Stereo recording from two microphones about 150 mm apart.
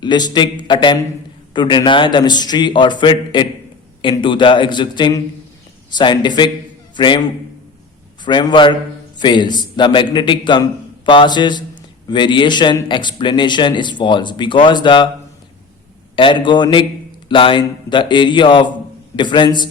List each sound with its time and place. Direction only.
0.0 s a man's voice: 30° left (ahead or behind)
8.2 s a man's voice: 30° left (ahead or behind)
16.1 s a man's voice: 35° left (ahead or behind)